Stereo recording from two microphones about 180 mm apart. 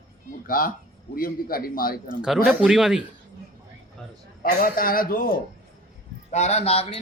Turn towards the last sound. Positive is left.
turn(degrees=35)  # may be behind; listen again after turning